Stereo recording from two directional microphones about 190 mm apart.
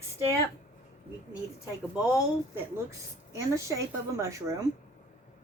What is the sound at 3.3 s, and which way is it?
Speech, 15° right (ahead or behind).